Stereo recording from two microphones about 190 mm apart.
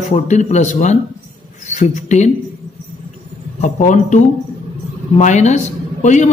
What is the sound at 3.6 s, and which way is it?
A man's voice, 40° left (ahead or behind).